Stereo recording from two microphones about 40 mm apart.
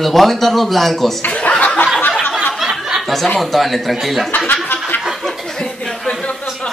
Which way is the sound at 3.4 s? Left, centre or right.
Centre.